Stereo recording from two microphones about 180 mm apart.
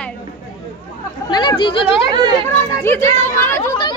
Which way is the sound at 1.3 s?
25° left (ahead or behind).